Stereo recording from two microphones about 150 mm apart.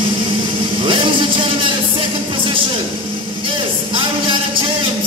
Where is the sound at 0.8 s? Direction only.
35° right (ahead or behind).